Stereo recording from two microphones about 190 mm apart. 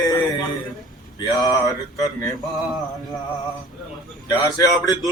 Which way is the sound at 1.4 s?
20° left (ahead or behind).